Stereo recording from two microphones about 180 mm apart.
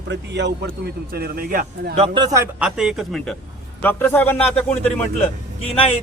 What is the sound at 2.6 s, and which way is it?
Speech, 5° right (ahead or behind).